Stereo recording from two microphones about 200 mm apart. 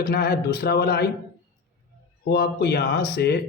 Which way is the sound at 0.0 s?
50° left (ahead or behind).